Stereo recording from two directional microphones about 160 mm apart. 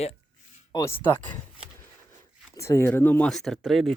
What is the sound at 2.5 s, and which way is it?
Speech, 15° left (ahead or behind).